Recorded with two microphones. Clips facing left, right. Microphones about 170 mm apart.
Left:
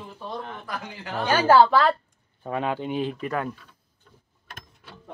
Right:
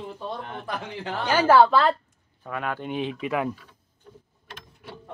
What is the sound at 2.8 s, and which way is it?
Speech, centre (ahead or behind).